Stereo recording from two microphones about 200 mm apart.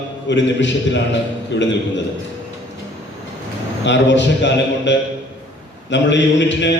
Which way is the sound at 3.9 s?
65° left (ahead or behind).